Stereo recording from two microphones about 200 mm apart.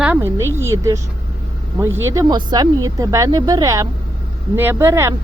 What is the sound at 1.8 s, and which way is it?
Speech, 10° right (ahead or behind).